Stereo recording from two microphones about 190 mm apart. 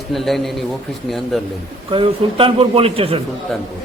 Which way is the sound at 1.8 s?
25° right (ahead or behind).